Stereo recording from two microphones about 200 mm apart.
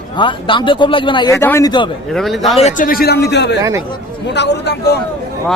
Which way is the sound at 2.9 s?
50° left (ahead or behind).